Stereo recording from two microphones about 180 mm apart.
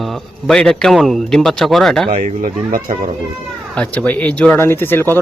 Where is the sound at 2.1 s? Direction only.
45° right (ahead or behind).